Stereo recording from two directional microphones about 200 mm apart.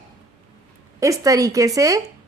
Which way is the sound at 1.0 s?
15° right (ahead or behind).